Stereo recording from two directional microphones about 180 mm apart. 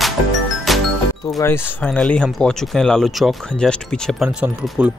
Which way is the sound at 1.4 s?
15° left (ahead or behind).